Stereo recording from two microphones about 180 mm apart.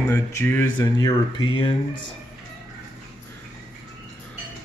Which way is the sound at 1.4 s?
30° left (ahead or behind).